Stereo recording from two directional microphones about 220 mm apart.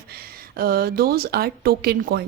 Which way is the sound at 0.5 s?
45° right (ahead or behind).